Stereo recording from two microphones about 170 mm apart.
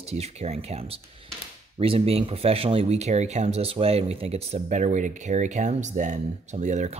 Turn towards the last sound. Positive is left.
turn(degrees=-45)  # may be behind; listen again after turning